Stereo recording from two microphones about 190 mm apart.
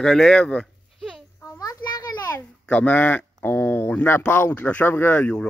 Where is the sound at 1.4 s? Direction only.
15° left (ahead or behind).